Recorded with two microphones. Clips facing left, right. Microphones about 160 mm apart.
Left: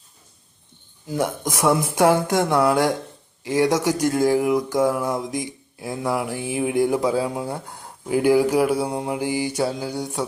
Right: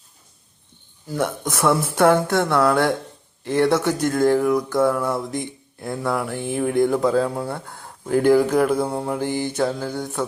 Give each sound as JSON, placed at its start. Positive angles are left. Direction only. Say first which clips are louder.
{"t": 1.0, "sound": "speech", "louder": "even", "side_deg": 15}